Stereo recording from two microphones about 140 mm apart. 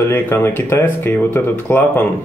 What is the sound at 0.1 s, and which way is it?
Speech, 15° left (ahead or behind).